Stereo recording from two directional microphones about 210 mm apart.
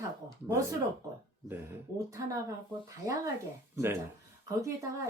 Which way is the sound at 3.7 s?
10° right (ahead or behind).